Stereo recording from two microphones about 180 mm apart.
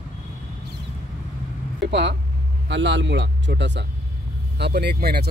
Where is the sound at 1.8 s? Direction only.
75° right (ahead or behind).